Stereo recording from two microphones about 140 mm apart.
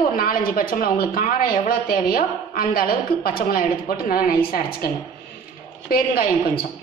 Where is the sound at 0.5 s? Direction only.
90° left.